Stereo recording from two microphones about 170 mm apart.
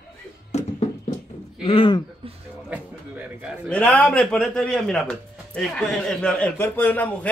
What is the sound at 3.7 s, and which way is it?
A man's voice, 10° left (ahead or behind).